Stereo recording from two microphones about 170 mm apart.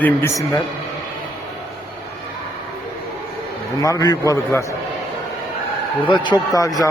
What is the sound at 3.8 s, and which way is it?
Speech, 20° left (ahead or behind).